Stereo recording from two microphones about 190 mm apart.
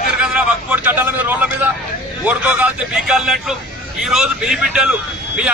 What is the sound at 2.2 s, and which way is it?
Vehicle, 5° right (ahead or behind).